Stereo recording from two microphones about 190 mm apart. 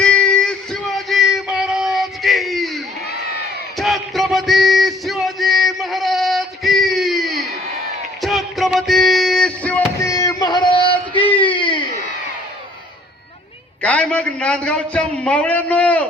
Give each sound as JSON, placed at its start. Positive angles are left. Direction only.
{"t": 0.0, "sound": "music", "side_deg": 5}
{"t": 10.1, "sound": "a sound", "side_deg": 20}
{"t": 13.8, "sound": "a man's voice", "side_deg": 5}